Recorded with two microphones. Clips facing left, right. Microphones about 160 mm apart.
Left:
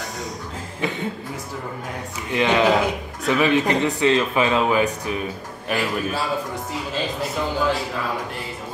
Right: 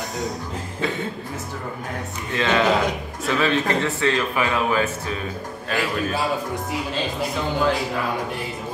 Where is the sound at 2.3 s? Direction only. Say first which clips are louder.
Left 2 dB; 15° left (ahead or behind).